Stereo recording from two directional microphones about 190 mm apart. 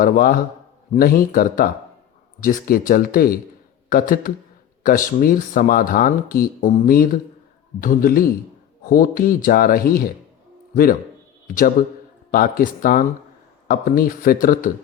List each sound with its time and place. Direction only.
0.0 s speech: 50° left (ahead or behind)
11.4 s a man's voice: 45° left (ahead or behind)